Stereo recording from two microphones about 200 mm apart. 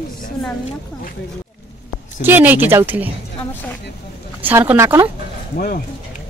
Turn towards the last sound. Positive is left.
turn(degrees=45)  # may be behind; listen again after turning